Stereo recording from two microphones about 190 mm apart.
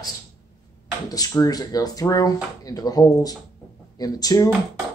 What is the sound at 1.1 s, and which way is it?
Speech, 20° left (ahead or behind).